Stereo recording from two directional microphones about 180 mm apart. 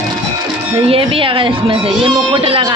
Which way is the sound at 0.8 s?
30° right (ahead or behind).